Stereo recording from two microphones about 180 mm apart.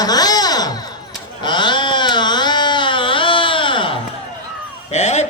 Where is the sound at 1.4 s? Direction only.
25° left (ahead or behind).